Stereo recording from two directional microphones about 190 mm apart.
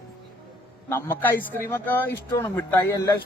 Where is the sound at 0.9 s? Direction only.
10° left (ahead or behind).